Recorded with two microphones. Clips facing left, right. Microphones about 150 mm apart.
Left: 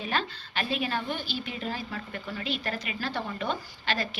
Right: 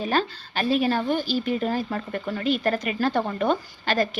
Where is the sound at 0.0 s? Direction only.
40° right (ahead or behind).